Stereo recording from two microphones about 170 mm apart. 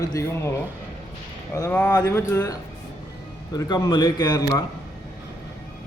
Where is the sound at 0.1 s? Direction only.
15° left (ahead or behind).